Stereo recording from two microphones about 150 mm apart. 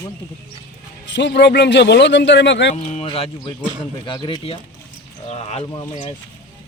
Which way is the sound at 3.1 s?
30° left (ahead or behind).